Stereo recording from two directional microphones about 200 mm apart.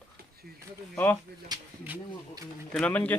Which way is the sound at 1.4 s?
20° right (ahead or behind).